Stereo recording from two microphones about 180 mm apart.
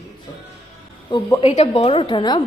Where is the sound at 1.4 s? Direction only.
35° left (ahead or behind).